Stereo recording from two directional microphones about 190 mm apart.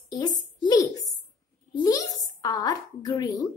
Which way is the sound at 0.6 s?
20° left (ahead or behind).